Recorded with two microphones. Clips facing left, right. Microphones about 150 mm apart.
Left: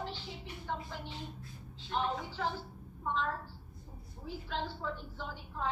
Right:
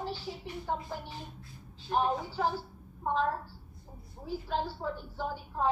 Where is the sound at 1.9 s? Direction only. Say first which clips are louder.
Right 5 dB; 45° right (ahead or behind).